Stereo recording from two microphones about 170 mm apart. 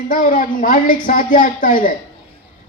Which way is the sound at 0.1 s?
55° left (ahead or behind).